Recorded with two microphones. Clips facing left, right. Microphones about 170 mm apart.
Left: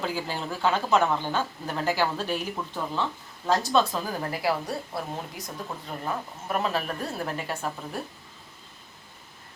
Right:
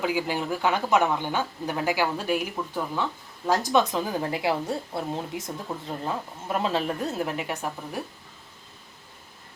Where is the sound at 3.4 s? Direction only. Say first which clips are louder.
Right 1 dB; 20° right (ahead or behind).